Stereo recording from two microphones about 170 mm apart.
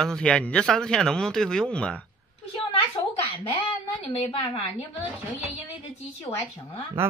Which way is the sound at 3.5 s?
30° left (ahead or behind).